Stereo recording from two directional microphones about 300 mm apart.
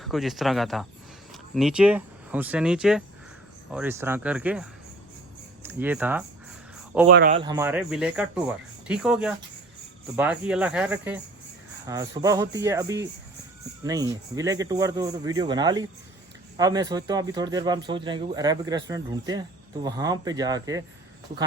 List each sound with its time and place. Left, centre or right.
0.0 s speech: centre
5.6 s speech: centre
7.1 s speech: right
7.3 s speech: centre